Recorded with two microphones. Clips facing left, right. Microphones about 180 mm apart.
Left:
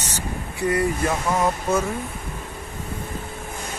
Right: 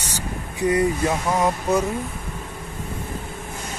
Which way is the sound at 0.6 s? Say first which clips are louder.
Right 2 dB; 20° right (ahead or behind).